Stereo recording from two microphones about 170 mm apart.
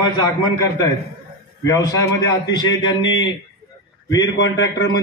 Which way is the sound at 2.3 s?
25° left (ahead or behind).